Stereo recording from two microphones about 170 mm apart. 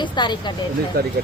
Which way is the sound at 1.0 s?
65° right (ahead or behind).